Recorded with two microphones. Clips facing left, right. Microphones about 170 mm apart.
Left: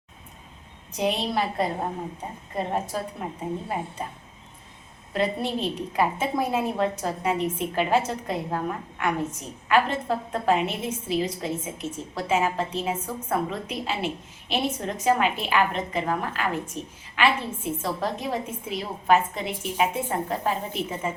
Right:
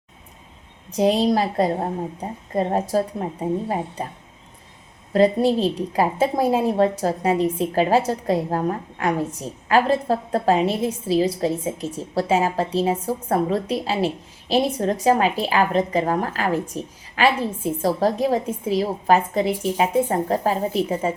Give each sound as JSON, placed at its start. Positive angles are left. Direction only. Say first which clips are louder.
{"t": 0.9, "sound": "a woman's voice", "louder": "right 7 dB", "side_deg": -35}
{"t": 5.1, "sound": "a woman's voice", "louder": "right 9 dB", "side_deg": -35}